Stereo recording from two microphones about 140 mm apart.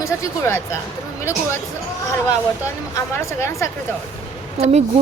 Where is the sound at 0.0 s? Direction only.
20° left (ahead or behind).